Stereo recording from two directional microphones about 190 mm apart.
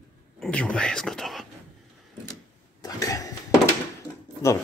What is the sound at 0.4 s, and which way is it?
Speech, 5° left (ahead or behind).